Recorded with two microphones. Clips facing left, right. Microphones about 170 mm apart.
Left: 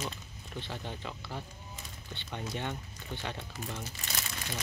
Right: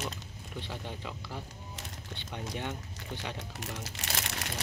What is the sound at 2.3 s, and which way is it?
Speech, 10° right (ahead or behind).